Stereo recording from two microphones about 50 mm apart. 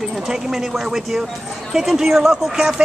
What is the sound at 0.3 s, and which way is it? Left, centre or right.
Speech, centre.